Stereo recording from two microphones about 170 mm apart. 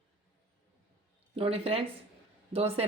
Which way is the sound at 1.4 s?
35° right (ahead or behind).